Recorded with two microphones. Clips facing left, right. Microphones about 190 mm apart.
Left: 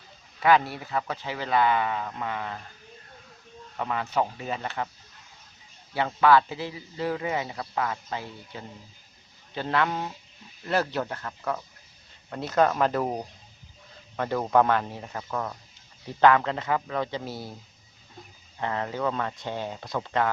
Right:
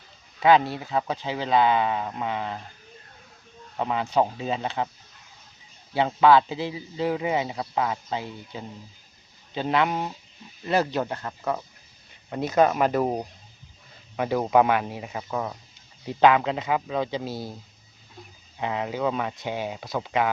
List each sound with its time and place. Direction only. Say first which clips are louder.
0.3 s speech: right 3 dB; 20° right (ahead or behind)
3.8 s speech: right 4 dB; 20° right (ahead or behind)
5.9 s a man's voice: right 2 dB; 20° right (ahead or behind)
14.2 s a man's voice: right 2 dB; 10° right (ahead or behind)
18.6 s a man's voice: right 2 dB; 10° right (ahead or behind)